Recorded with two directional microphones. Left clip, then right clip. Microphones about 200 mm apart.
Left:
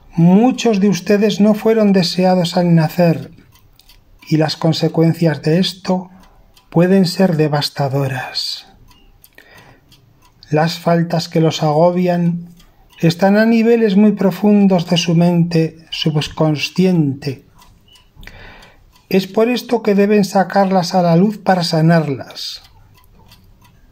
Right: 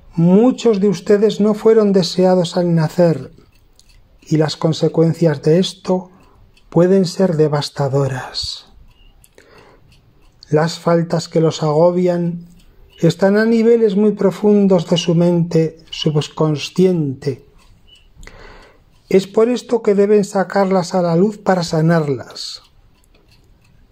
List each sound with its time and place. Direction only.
0.1 s a man's voice: 15° right (ahead or behind)
10.5 s a man's voice: 25° right (ahead or behind)
18.2 s tick-tock: 20° right (ahead or behind)
19.0 s a man's voice: 20° right (ahead or behind)